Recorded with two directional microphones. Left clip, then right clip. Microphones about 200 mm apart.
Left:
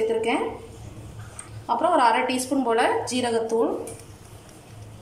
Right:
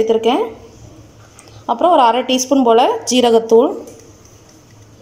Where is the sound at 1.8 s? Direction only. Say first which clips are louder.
Right 8 dB; 40° right (ahead or behind).